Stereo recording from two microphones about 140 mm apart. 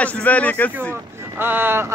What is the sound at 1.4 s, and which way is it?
Speech, 15° right (ahead or behind).